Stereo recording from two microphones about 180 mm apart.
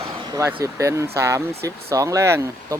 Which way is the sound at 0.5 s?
15° right (ahead or behind).